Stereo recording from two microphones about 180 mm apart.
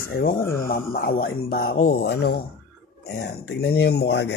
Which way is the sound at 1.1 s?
55° left (ahead or behind).